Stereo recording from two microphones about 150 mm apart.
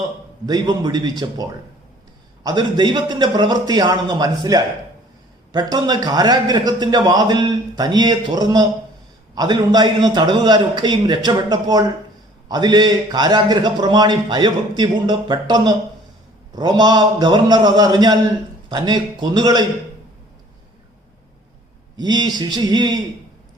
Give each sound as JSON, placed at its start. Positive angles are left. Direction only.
{"t": 0.4, "sound": "a man's voice", "side_deg": -25}
{"t": 2.4, "sound": "a man's voice", "side_deg": -25}
{"t": 21.9, "sound": "a man's voice", "side_deg": -30}